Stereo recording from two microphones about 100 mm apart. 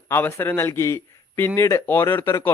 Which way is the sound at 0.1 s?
25° left (ahead or behind).